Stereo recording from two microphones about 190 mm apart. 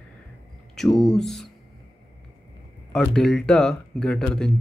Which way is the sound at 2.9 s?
5° left (ahead or behind).